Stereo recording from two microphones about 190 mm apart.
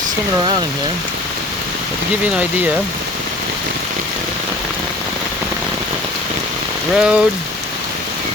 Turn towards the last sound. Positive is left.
turn(degrees=-5)  # may be behind; listen again after turning